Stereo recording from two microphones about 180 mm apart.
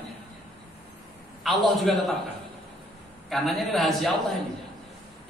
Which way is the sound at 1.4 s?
Centre (ahead or behind).